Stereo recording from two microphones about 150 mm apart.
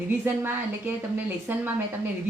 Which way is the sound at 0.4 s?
15° right (ahead or behind).